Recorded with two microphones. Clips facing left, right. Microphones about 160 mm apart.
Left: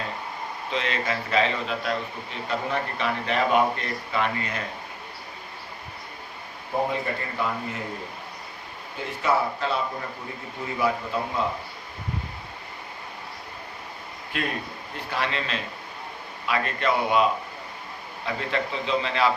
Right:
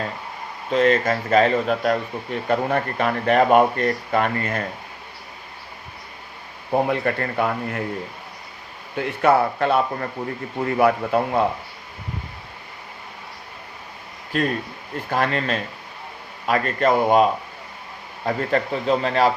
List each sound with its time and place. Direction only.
0.7 s a man's voice: 45° right (ahead or behind)
6.8 s speech: 65° right (ahead or behind)
9.0 s speech: 60° right (ahead or behind)
14.3 s a man's voice: 40° right (ahead or behind)
18.3 s a man's voice: 45° right (ahead or behind)